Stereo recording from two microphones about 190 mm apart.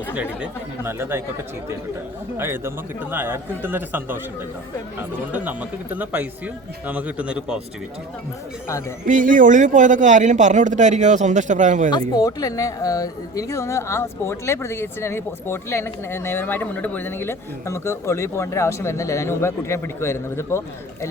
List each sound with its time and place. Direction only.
0.9 s speech: 10° right (ahead or behind)
2.4 s speech: 10° right (ahead or behind)
9.0 s speech: 45° right (ahead or behind)
11.9 s speech: 20° left (ahead or behind)